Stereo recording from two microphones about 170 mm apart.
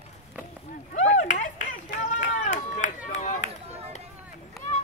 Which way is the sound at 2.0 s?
45° left (ahead or behind).